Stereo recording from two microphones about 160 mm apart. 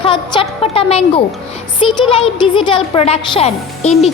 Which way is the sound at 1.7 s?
35° left (ahead or behind).